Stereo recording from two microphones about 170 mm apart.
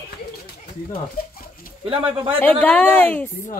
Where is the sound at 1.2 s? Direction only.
60° left (ahead or behind).